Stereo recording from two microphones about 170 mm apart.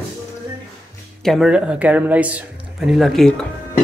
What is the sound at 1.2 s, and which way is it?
Speech, centre (ahead or behind).